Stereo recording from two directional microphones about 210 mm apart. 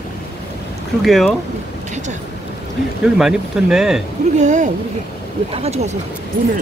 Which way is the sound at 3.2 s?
5° right (ahead or behind).